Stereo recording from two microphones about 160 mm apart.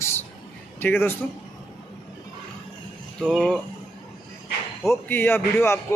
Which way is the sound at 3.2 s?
Centre (ahead or behind).